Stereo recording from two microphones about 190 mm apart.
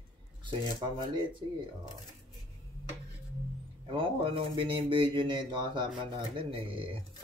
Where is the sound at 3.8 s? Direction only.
25° right (ahead or behind).